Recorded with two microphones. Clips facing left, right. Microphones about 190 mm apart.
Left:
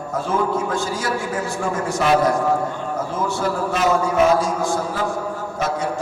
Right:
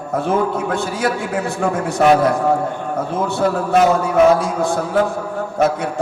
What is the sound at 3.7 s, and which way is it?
A man's voice, 60° right (ahead or behind).